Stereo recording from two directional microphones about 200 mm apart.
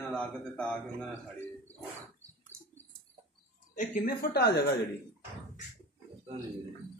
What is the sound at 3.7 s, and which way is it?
Speech, 45° left (ahead or behind).